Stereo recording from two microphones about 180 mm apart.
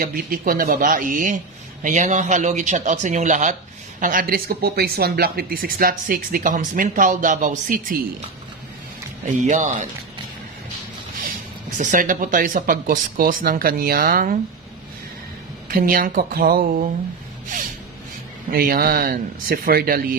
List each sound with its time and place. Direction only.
0.0 s speech: 55° right (ahead or behind)
9.4 s speech: 45° right (ahead or behind)
11.8 s speech: 45° right (ahead or behind)
15.7 s speech: 55° right (ahead or behind)
18.5 s speech: 55° right (ahead or behind)